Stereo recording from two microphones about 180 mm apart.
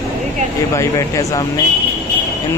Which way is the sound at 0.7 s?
15° left (ahead or behind).